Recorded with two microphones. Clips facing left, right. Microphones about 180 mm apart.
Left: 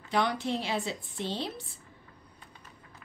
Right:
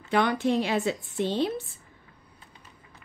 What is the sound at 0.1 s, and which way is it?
Speech, 60° right (ahead or behind).